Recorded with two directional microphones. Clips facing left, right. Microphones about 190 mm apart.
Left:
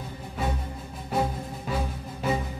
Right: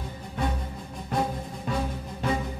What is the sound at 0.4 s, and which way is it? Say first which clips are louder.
Music: right 1 dB; 5° left (ahead or behind).